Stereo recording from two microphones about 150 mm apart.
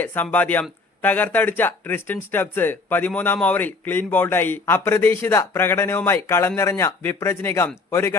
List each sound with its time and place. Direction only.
0.0 s speech: 10° left (ahead or behind)